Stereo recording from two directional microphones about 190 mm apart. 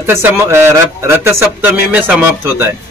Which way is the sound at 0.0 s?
10° right (ahead or behind).